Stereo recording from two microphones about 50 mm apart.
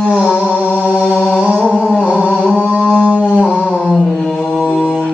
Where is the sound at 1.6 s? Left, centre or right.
Centre.